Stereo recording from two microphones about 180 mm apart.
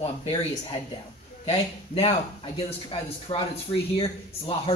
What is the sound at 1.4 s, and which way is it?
Speech, 35° left (ahead or behind).